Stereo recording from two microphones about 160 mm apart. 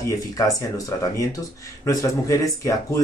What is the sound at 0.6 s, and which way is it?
Speech, 20° left (ahead or behind).